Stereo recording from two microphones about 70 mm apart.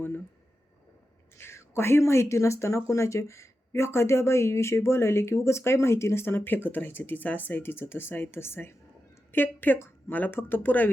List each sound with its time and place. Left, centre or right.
1.4 s speech: left